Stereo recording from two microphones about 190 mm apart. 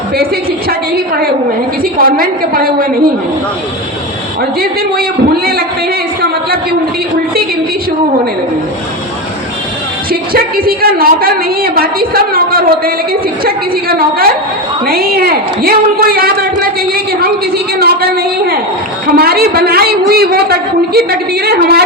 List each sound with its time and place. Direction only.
0.7 s a woman's voice: 55° right (ahead or behind)
10.1 s a woman's voice: 50° right (ahead or behind)